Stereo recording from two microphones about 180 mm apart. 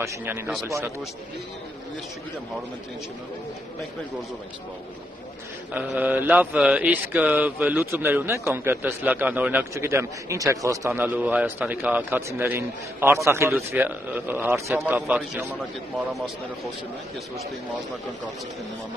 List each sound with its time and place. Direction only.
0.0 s mantra: 10° right (ahead or behind)
5.7 s mantra: 10° right (ahead or behind)